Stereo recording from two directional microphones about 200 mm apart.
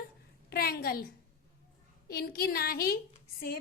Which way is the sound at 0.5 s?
50° left (ahead or behind).